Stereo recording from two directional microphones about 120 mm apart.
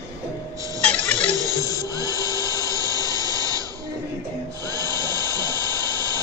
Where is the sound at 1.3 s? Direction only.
30° right (ahead or behind).